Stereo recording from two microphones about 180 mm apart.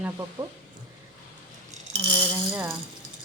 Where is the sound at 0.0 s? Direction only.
20° right (ahead or behind).